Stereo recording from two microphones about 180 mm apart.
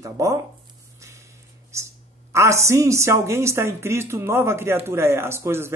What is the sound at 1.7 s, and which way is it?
A woman's voice, 15° right (ahead or behind).